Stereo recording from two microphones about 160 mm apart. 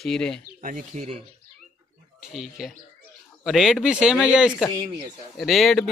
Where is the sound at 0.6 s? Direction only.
55° right (ahead or behind).